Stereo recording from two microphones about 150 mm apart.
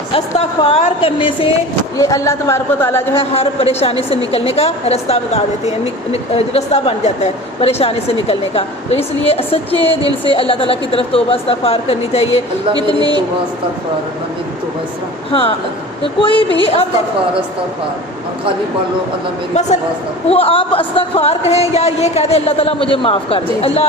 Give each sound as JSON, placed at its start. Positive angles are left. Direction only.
{"t": 0.1, "sound": "speech", "side_deg": 40}
{"t": 2.0, "sound": "speech", "side_deg": 20}
{"t": 3.2, "sound": "a woman's voice", "side_deg": 40}
{"t": 15.3, "sound": "speech", "side_deg": 35}
{"t": 20.2, "sound": "speech", "side_deg": 40}